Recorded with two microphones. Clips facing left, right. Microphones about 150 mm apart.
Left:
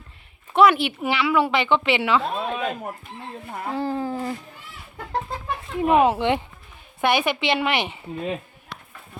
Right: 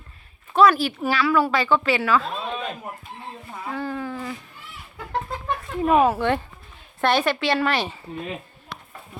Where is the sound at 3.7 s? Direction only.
30° left (ahead or behind).